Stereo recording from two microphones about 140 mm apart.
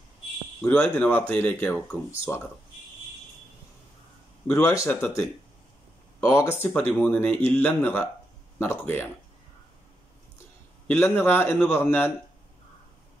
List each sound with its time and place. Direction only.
0.6 s speech: 10° left (ahead or behind)
4.6 s speech: 20° left (ahead or behind)
10.9 s speech: 15° left (ahead or behind)